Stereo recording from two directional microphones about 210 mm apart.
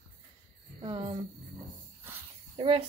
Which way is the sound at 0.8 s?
25° right (ahead or behind).